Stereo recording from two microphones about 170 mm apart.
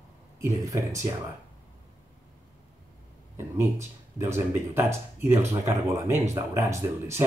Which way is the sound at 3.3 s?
15° right (ahead or behind).